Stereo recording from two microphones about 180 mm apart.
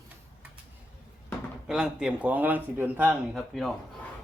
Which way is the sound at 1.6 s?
5° right (ahead or behind).